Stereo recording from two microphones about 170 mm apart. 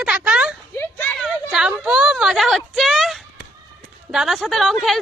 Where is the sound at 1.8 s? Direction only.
5° right (ahead or behind).